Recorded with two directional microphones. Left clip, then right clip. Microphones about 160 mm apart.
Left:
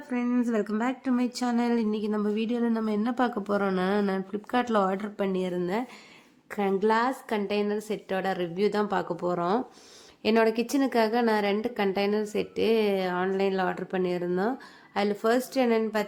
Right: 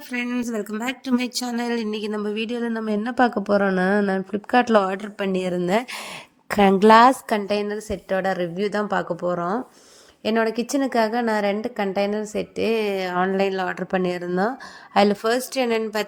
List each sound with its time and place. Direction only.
0.1 s speech: 65° right (ahead or behind)
0.7 s speech: 40° right (ahead or behind)
1.1 s speech: 55° right (ahead or behind)
6.5 s a woman's voice: 70° right (ahead or behind)
7.3 s a woman's voice: 40° right (ahead or behind)